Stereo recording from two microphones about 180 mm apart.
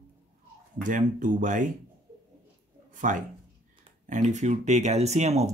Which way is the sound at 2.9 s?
45° right (ahead or behind).